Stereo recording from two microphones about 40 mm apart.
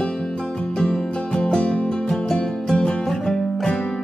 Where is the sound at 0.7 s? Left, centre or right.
Left.